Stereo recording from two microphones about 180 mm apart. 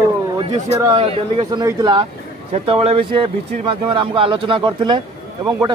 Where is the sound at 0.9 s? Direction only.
30° right (ahead or behind).